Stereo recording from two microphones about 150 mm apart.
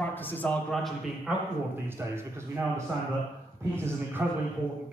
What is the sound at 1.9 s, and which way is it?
Speech, 15° right (ahead or behind).